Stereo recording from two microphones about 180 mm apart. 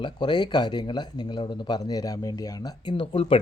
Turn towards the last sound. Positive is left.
turn(degrees=30)  # may be behind; listen again after turning